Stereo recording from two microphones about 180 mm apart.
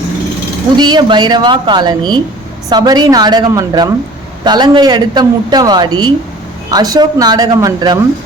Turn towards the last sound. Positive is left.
turn(degrees=-20)  # may be behind; listen again after turning